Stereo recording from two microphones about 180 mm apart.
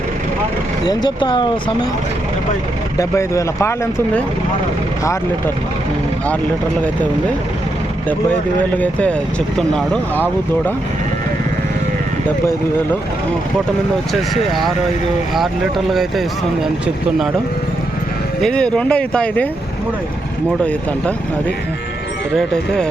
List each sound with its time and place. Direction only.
0.9 s speech: 25° left (ahead or behind)
3.0 s speech: 15° left (ahead or behind)
8.8 s speech: 5° left (ahead or behind)
15.9 s speech: centre (ahead or behind)
18.4 s speech: 5° left (ahead or behind)
22.4 s speech: 5° left (ahead or behind)